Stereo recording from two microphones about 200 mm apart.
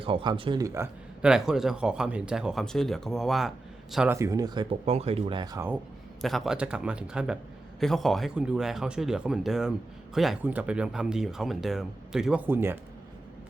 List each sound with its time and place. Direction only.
0.0 s speech: 25° right (ahead or behind)
6.2 s speech: centre (ahead or behind)